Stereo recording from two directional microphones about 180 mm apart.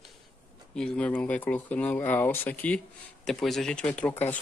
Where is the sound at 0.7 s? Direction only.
5° left (ahead or behind).